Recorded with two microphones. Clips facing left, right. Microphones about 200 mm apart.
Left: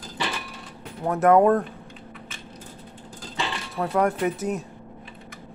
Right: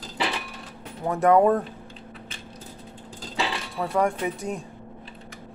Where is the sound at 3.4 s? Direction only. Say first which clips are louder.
Even; centre (ahead or behind).